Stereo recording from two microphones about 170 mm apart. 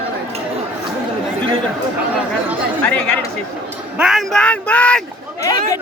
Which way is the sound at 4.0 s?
Centre (ahead or behind).